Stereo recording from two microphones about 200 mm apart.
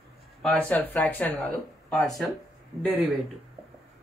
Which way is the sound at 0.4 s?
5° left (ahead or behind).